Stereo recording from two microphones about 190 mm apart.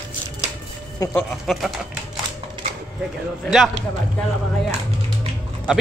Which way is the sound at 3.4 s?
Centre (ahead or behind).